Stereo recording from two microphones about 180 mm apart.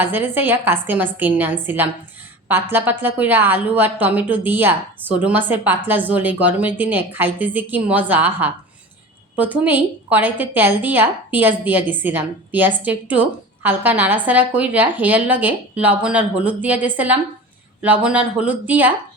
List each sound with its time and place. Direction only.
0.0 s a woman's voice: 10° right (ahead or behind)